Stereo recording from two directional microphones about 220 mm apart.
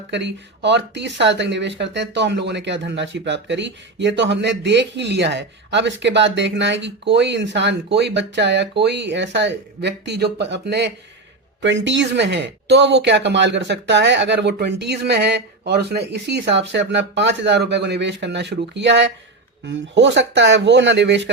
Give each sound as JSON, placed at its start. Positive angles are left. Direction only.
{"t": 0.1, "sound": "speech", "side_deg": -50}